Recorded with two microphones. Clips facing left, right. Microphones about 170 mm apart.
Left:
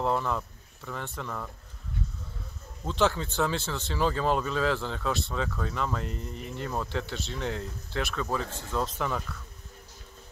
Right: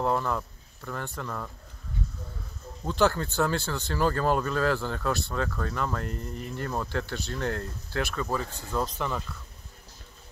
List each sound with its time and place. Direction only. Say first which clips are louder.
0.0 s speech: right 1 dB; centre (ahead or behind)
2.8 s speech: right 2 dB; centre (ahead or behind)